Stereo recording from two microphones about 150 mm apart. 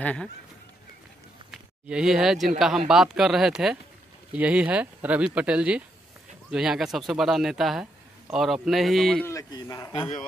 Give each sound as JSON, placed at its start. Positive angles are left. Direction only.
{"t": 0.0, "sound": "speech", "side_deg": 10}
{"t": 1.5, "sound": "speech", "side_deg": -5}
{"t": 9.2, "sound": "speech", "side_deg": 20}